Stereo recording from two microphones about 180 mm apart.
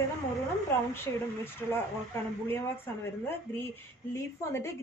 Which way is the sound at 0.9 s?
15° left (ahead or behind).